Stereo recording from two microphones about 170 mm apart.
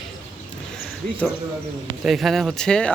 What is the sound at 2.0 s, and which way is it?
Speech, centre (ahead or behind).